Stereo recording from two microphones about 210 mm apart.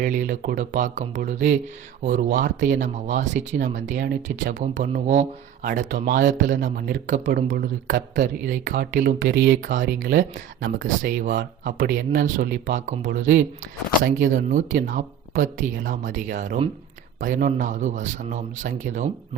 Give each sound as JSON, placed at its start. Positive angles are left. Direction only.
{"t": 0.0, "sound": "speech", "side_deg": -40}
{"t": 5.9, "sound": "speech", "side_deg": -45}